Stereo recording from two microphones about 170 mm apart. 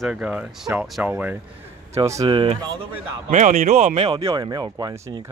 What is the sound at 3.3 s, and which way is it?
Speech, 50° right (ahead or behind).